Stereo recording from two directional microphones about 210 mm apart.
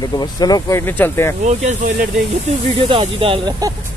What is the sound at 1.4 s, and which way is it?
Speech, 35° right (ahead or behind).